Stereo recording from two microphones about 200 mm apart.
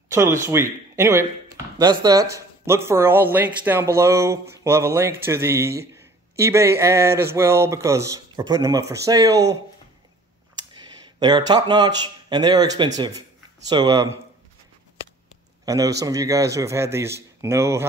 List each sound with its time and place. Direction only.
0.1 s speech: 15° right (ahead or behind)
11.1 s speech: 20° right (ahead or behind)
15.6 s speech: 15° right (ahead or behind)